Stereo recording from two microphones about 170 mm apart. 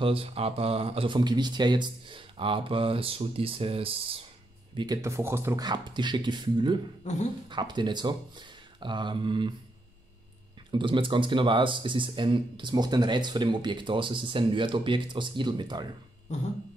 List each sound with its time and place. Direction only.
0.0 s speech: 35° right (ahead or behind)
7.0 s speech: 45° left (ahead or behind)
7.4 s speech: 25° right (ahead or behind)
10.7 s speech: 30° right (ahead or behind)